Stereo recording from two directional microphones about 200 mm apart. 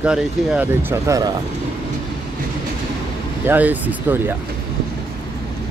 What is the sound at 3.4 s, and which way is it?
Speech, 10° right (ahead or behind).